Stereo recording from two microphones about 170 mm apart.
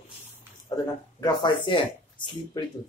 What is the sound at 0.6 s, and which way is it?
Speech, 25° left (ahead or behind).